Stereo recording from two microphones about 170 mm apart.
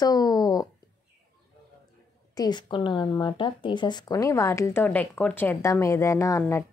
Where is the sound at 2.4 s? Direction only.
25° left (ahead or behind).